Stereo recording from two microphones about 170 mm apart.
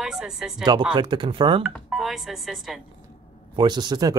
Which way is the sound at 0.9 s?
25° right (ahead or behind).